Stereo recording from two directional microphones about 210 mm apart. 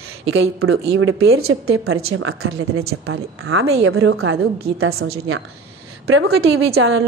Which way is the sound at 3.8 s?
80° right.